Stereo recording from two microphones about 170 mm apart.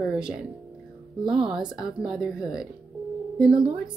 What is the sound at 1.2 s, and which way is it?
Speech, 30° right (ahead or behind).